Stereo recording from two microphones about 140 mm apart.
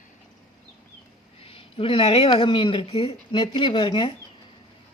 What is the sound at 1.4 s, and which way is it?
Speech, 40° left (ahead or behind).